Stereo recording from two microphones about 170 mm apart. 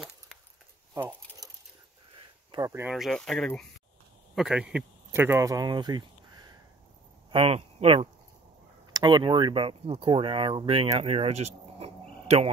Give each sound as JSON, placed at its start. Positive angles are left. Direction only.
{"t": 0.9, "sound": "a sound", "side_deg": -15}
{"t": 2.5, "sound": "speech", "side_deg": -20}
{"t": 2.9, "sound": "speech", "side_deg": 0}
{"t": 7.2, "sound": "speech", "side_deg": -35}